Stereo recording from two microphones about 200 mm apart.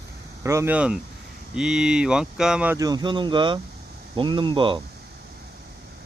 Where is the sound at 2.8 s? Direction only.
20° right (ahead or behind).